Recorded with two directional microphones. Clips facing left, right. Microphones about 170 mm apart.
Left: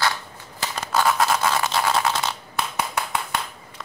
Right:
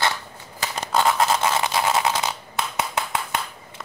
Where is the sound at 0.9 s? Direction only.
20° right (ahead or behind).